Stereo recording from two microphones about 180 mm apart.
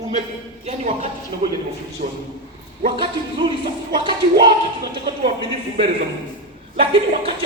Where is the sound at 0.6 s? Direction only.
35° right (ahead or behind).